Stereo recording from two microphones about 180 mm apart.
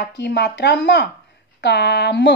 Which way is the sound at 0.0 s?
70° left (ahead or behind).